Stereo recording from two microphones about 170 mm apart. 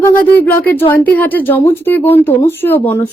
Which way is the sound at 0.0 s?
10° left (ahead or behind).